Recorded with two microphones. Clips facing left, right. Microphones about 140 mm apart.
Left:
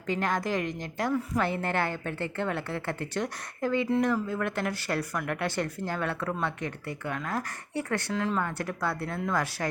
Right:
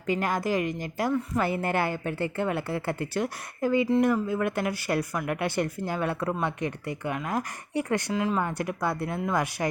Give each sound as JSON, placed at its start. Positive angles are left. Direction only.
{"t": 0.1, "sound": "speech", "side_deg": -5}
{"t": 4.1, "sound": "speech", "side_deg": -10}